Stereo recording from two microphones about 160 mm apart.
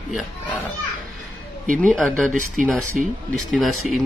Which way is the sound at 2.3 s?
55° right (ahead or behind).